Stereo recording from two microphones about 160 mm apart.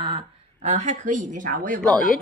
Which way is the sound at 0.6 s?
50° right (ahead or behind).